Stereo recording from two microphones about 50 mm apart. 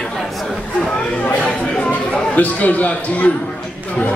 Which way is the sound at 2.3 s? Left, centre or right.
Left.